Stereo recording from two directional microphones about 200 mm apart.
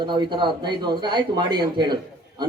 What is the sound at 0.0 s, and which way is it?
A man's voice, 25° right (ahead or behind).